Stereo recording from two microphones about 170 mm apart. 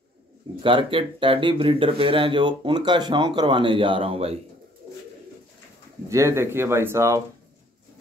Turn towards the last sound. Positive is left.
turn(degrees=-15)  # may be behind; listen again after turning